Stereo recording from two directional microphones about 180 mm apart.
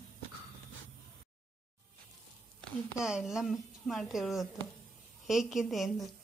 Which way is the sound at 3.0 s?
5° right (ahead or behind).